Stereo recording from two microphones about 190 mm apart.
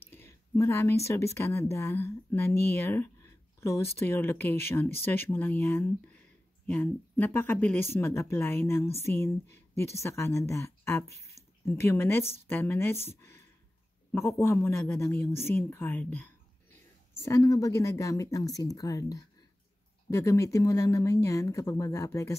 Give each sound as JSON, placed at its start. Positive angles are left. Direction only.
{"t": 0.1, "sound": "speech", "side_deg": 15}
{"t": 17.2, "sound": "speech", "side_deg": 15}